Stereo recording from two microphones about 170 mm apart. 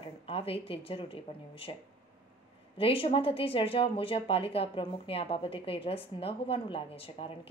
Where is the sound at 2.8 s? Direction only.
30° left (ahead or behind).